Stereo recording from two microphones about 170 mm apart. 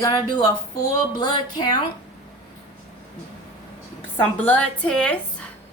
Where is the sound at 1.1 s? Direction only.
25° left (ahead or behind).